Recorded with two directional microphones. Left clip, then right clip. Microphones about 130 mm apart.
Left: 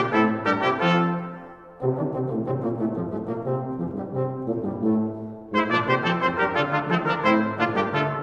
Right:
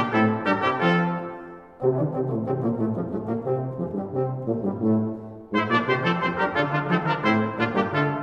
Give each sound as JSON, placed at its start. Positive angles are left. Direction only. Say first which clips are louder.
{"t": 0.2, "sound": "brass instrument", "louder": "left 1 dB", "side_deg": 25}
{"t": 1.8, "sound": "brass instrument", "louder": "right 2 dB", "side_deg": -5}
{"t": 4.8, "sound": "brass instrument", "louder": "even", "side_deg": -10}
{"t": 5.6, "sound": "brass instrument", "louder": "left 1 dB", "side_deg": 15}